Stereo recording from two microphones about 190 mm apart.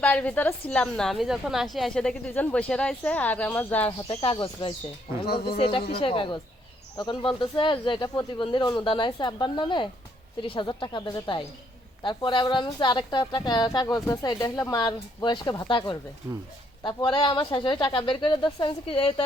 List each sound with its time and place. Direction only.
0.0 s a woman's voice: 5° left (ahead or behind)
4.2 s a woman's voice: 30° left (ahead or behind)
5.2 s speech: 55° left (ahead or behind)
5.5 s a woman's voice: 30° left (ahead or behind)
16.2 s speech: 10° right (ahead or behind)
16.8 s a woman's voice: 25° left (ahead or behind)